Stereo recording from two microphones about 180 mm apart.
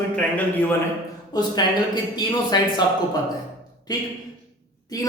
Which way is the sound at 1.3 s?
25° left (ahead or behind).